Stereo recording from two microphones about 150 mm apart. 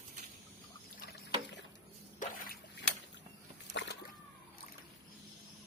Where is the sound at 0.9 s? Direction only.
90° left.